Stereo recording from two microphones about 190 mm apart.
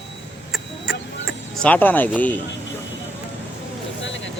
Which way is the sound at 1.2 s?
5° left (ahead or behind).